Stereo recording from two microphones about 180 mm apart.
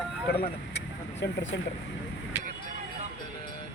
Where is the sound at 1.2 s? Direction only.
90° left.